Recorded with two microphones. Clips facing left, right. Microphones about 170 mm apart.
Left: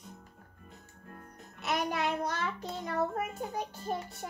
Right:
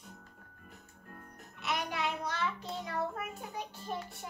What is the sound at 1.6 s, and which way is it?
Child singing, 45° left (ahead or behind).